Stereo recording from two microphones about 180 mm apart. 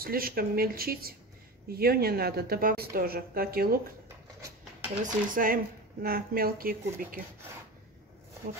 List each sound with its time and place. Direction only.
0.0 s a woman's voice: 55° right (ahead or behind)
5.0 s a woman's voice: 50° right (ahead or behind)